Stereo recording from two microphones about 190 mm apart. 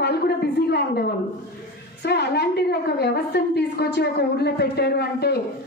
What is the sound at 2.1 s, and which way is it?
A woman's voice, 60° left (ahead or behind).